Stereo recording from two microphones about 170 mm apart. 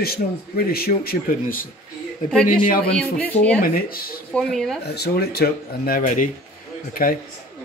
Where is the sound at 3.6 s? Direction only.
60° left (ahead or behind).